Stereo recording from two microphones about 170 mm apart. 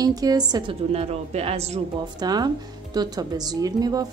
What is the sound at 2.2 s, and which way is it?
A woman's voice, 25° right (ahead or behind).